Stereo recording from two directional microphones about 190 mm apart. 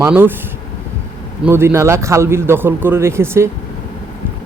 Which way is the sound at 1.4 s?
15° right (ahead or behind).